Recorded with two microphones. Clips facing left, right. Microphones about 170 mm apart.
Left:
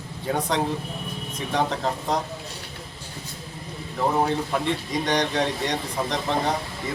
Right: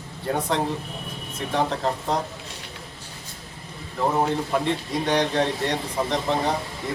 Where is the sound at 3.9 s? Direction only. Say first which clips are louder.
Even; centre (ahead or behind).